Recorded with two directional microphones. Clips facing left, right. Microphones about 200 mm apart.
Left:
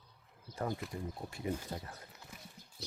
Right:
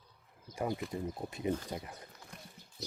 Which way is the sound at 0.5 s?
15° right (ahead or behind).